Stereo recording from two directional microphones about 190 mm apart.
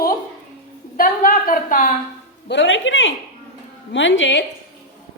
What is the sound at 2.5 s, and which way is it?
A woman's voice, 75° left (ahead or behind).